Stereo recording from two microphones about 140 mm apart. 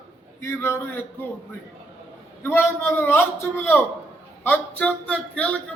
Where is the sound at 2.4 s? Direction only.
15° left (ahead or behind).